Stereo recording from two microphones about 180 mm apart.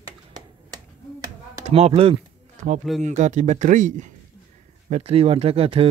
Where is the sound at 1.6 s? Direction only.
35° right (ahead or behind).